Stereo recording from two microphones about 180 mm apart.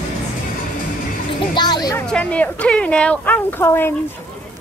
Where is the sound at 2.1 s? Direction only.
5° left (ahead or behind).